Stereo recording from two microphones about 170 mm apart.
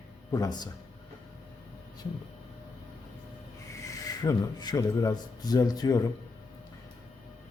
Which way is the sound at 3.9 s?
20° left (ahead or behind).